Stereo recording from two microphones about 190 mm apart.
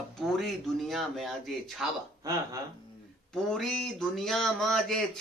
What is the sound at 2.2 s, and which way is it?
Speech, 15° right (ahead or behind).